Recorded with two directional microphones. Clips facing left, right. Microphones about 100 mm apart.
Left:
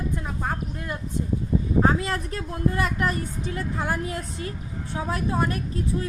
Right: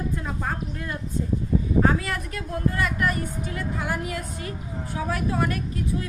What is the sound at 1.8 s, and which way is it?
A woman's voice, 30° left (ahead or behind).